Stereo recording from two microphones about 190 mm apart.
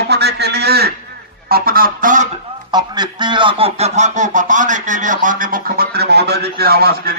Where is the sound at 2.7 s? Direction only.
20° right (ahead or behind).